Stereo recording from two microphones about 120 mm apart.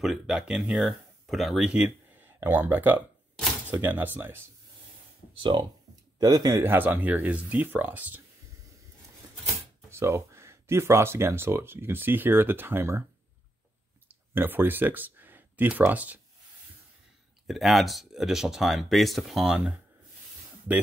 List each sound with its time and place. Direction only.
0.0 s speech: centre (ahead or behind); by 4.5 s 20° right (ahead or behind)
5.4 s speech: 40° right (ahead or behind); by 8.2 s 15° right (ahead or behind)
9.8 s speech: 25° right (ahead or behind)
14.0 s speech: 15° right (ahead or behind)
17.5 s speech: centre (ahead or behind)